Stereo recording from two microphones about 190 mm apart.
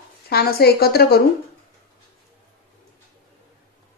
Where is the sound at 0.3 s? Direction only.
55° left (ahead or behind).